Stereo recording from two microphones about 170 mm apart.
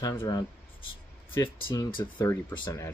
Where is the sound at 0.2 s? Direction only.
25° left (ahead or behind).